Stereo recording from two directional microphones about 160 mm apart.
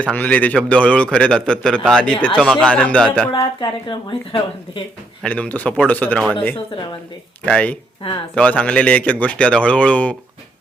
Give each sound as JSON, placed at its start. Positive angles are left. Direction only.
{"t": 0.0, "sound": "a man's voice", "side_deg": 10}
{"t": 3.3, "sound": "speech", "side_deg": 30}
{"t": 5.2, "sound": "a man's voice", "side_deg": 10}
{"t": 7.4, "sound": "a man's voice", "side_deg": 10}